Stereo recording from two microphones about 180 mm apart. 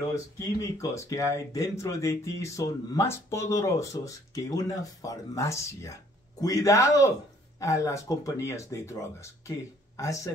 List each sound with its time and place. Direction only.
0.1 s speech: 15° left (ahead or behind)